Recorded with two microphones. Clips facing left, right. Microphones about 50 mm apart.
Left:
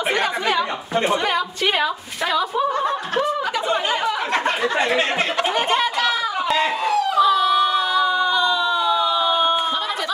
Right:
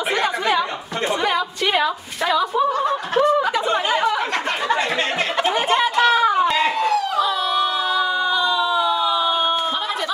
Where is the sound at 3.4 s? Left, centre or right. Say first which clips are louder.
Right 2 dB; centre.